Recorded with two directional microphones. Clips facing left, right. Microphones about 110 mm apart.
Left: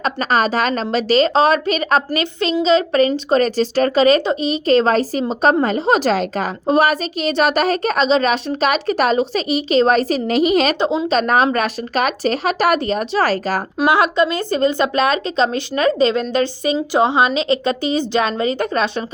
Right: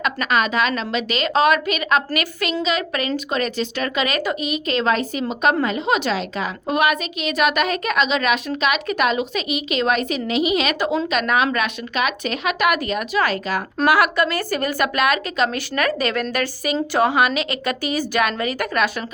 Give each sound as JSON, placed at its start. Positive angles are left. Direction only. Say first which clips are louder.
{"t": 0.0, "sound": "a woman's voice", "louder": "left 3 dB", "side_deg": 35}
{"t": 10.8, "sound": "a woman's voice", "louder": "left 4 dB", "side_deg": 25}
{"t": 13.8, "sound": "speech", "louder": "left 2 dB", "side_deg": 20}